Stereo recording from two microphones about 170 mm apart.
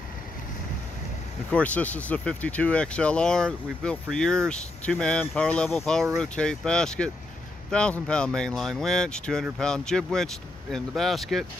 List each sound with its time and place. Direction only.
1.5 s speech: 10° left (ahead or behind)